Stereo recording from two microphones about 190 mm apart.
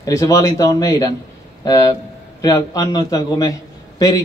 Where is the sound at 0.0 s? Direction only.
15° left (ahead or behind).